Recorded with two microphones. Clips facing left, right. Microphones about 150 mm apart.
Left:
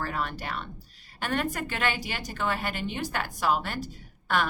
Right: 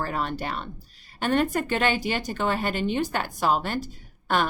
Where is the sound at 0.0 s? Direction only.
30° right (ahead or behind).